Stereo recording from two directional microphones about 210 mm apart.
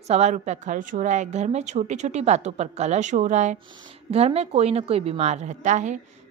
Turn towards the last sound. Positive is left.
turn(degrees=-35)  # may be behind; listen again after turning